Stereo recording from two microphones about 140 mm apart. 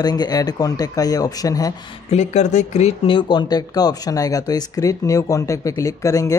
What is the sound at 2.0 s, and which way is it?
Speech, 55° left (ahead or behind).